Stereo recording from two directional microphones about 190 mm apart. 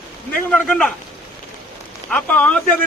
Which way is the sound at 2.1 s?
10° left (ahead or behind).